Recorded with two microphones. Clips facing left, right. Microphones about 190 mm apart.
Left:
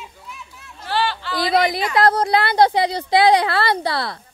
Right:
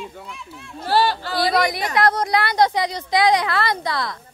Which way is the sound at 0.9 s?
40° right (ahead or behind).